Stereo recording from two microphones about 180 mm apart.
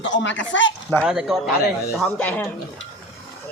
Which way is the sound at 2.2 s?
10° left (ahead or behind).